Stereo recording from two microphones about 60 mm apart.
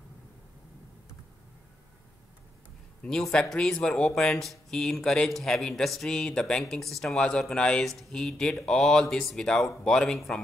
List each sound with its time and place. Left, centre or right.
3.0 s speech: centre